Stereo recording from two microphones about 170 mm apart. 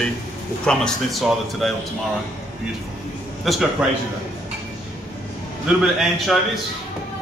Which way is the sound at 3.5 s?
Centre (ahead or behind).